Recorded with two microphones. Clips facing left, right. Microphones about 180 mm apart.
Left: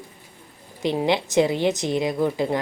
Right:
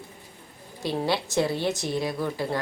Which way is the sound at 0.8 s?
20° left (ahead or behind).